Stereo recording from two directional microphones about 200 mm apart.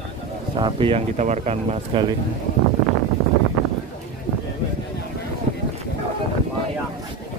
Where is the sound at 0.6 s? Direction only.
25° right (ahead or behind).